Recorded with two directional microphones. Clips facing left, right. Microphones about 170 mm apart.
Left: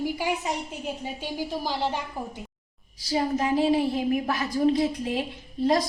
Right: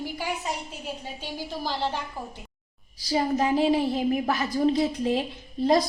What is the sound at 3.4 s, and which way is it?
A woman's voice, 30° right (ahead or behind).